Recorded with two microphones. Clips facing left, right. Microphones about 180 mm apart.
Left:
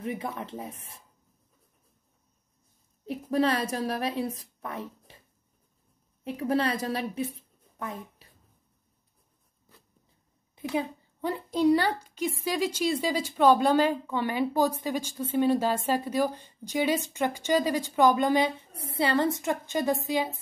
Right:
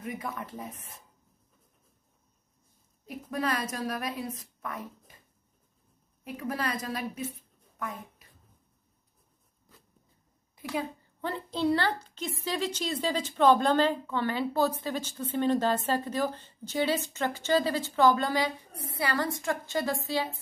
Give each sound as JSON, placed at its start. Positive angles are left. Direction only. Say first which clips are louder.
{"t": 0.0, "sound": "a woman's voice", "louder": "left 3 dB", "side_deg": 25}
{"t": 3.1, "sound": "a woman's voice", "louder": "left 6 dB", "side_deg": 30}
{"t": 6.2, "sound": "a woman's voice", "louder": "left 6 dB", "side_deg": 30}
{"t": 10.7, "sound": "a child's voice", "louder": "left 3 dB", "side_deg": 15}